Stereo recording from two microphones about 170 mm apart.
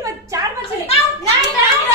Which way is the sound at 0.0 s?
20° right (ahead or behind).